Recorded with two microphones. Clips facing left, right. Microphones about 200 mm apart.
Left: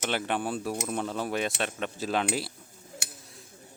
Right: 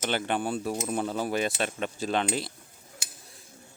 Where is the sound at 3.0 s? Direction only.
65° left (ahead or behind).